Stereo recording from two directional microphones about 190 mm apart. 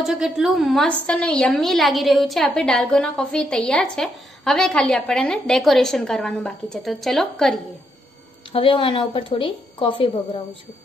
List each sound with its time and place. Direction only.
0.0 s a woman's voice: centre (ahead or behind)
8.5 s speech: 25° left (ahead or behind)